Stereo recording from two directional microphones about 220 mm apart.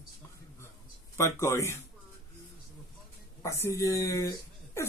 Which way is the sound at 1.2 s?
10° left (ahead or behind).